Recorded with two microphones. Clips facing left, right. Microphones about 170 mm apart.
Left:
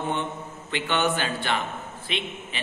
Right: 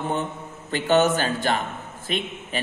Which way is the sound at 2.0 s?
45° right (ahead or behind).